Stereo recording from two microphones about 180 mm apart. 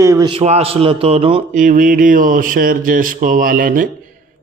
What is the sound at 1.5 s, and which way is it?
A man's voice, 50° right (ahead or behind).